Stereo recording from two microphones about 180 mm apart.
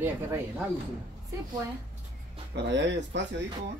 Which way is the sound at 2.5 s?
75° right (ahead or behind).